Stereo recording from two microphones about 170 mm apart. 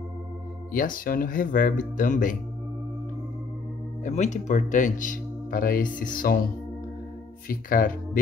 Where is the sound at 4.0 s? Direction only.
45° left (ahead or behind).